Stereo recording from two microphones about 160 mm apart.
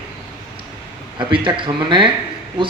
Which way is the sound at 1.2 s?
30° right (ahead or behind).